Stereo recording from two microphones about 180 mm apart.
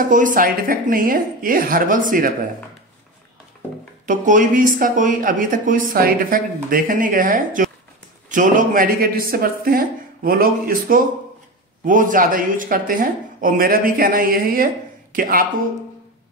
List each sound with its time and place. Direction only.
0.0 s speech: 45° right (ahead or behind)
4.1 s speech: 45° right (ahead or behind)